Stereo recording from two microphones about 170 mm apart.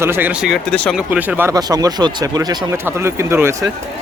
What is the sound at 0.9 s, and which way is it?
Speech, 5° right (ahead or behind).